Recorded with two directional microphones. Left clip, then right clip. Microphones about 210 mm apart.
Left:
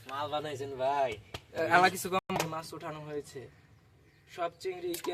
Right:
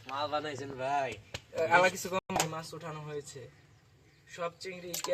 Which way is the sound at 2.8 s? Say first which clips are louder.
Left 2 dB; 55° left (ahead or behind).